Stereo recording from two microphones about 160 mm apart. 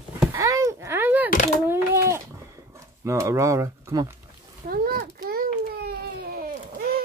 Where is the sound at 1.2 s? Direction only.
60° left (ahead or behind).